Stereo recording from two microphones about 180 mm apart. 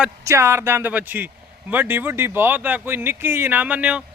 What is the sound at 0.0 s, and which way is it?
Speech, 15° right (ahead or behind).